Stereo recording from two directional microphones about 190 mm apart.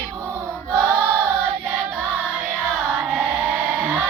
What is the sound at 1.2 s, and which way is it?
Choir, 5° right (ahead or behind).